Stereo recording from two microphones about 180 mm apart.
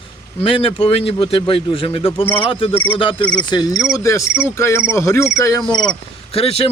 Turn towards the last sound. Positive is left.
turn(degrees=35)  # may be behind; listen again after turning